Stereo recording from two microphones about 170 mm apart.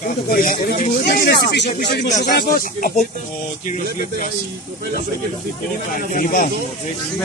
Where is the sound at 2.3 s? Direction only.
55° left (ahead or behind).